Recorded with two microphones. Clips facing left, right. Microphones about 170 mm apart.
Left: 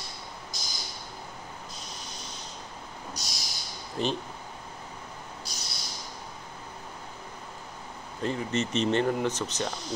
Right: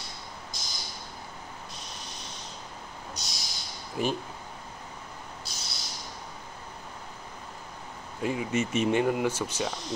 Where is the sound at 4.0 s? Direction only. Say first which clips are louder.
Right 1 dB; 10° right (ahead or behind).